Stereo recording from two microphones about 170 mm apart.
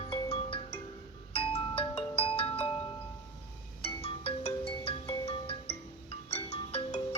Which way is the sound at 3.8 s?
35° left (ahead or behind).